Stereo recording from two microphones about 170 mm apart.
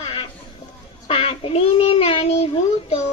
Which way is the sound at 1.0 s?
30° left (ahead or behind).